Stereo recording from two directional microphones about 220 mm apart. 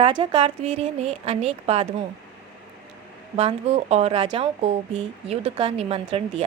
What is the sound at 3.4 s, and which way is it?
Speech, 30° right (ahead or behind).